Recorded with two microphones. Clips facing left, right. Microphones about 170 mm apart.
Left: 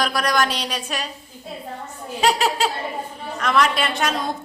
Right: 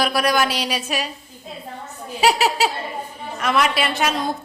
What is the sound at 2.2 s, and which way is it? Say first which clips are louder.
A woman's voice: right 2 dB; 5° right (ahead or behind).